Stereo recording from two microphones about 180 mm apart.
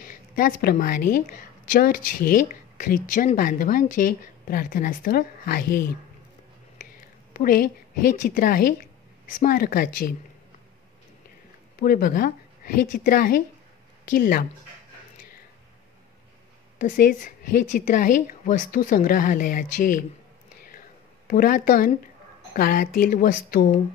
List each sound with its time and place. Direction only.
0.4 s a woman's voice: 55° left (ahead or behind)
7.3 s a woman's voice: 55° left (ahead or behind)
11.8 s a woman's voice: 55° left (ahead or behind)
16.7 s a woman's voice: 50° left (ahead or behind)
21.3 s a woman's voice: 50° left (ahead or behind)